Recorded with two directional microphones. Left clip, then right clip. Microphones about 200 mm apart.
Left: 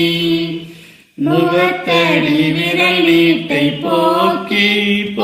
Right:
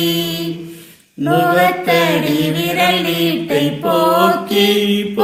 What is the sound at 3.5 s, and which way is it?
Mantra, 35° right (ahead or behind).